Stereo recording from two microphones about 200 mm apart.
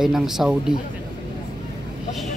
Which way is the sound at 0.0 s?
Centre (ahead or behind).